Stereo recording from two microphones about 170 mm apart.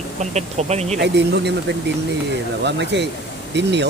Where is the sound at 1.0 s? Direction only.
85° right.